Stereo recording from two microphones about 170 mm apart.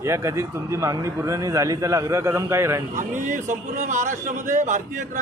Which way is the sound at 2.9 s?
45° right (ahead or behind).